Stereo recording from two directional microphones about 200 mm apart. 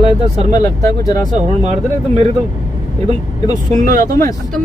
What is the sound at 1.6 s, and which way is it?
Speech, 35° right (ahead or behind).